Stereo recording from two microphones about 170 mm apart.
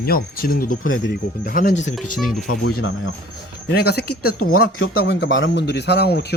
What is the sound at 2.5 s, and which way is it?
Speech, 60° left (ahead or behind).